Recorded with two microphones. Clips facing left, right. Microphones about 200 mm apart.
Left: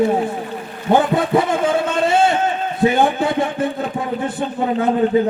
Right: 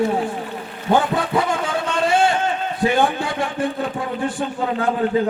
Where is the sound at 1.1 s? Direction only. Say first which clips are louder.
Left 4 dB; 25° left (ahead or behind).